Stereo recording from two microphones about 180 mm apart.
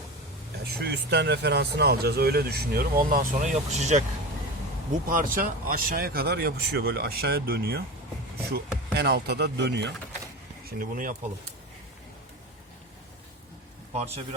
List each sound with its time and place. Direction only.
0.6 s speech: 65° right (ahead or behind); by 4.0 s 40° right (ahead or behind)
5.0 s speech: 50° right (ahead or behind); by 9.9 s 70° right (ahead or behind)
10.7 s speech: 50° right (ahead or behind)